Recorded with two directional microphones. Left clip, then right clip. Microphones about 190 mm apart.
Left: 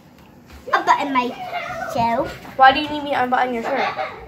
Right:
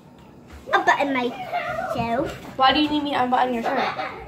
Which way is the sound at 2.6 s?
Centre (ahead or behind).